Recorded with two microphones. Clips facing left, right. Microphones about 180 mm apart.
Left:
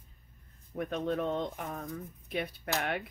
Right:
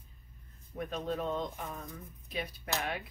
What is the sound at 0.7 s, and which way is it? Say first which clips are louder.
Speech: left 3 dB; 60° left (ahead or behind).